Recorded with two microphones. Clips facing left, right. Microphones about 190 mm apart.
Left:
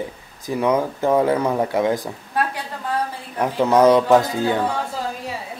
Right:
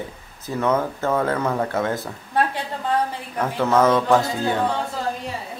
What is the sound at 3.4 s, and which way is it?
Speech, 15° left (ahead or behind).